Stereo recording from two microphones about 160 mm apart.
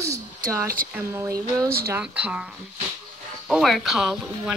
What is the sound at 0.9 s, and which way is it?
Speech, 15° right (ahead or behind).